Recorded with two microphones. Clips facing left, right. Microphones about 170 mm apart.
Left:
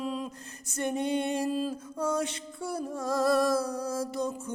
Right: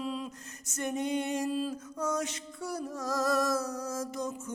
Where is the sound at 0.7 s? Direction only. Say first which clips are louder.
Left 3 dB; 30° left (ahead or behind).